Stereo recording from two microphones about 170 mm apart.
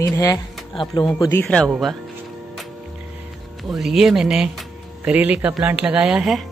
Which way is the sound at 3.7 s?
Centre (ahead or behind).